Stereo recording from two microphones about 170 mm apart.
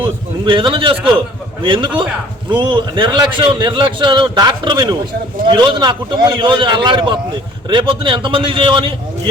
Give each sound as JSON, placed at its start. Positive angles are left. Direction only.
{"t": 0.4, "sound": "a man's voice", "side_deg": -30}